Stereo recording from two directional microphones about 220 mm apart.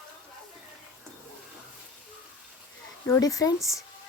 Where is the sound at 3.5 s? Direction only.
Centre (ahead or behind).